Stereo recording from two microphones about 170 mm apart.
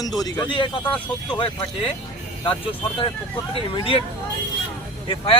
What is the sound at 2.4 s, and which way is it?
Speech, 30° left (ahead or behind).